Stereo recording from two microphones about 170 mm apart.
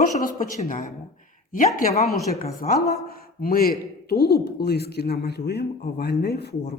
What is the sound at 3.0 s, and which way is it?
A man's voice, 60° left (ahead or behind).